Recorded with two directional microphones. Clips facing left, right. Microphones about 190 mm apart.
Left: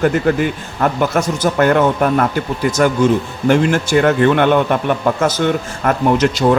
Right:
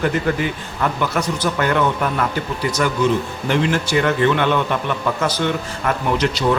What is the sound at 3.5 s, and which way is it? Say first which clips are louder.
A man's voice: left 6 dB; 50° left (ahead or behind).